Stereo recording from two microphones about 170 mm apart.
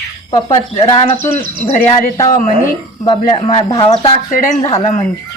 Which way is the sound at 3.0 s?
30° left (ahead or behind).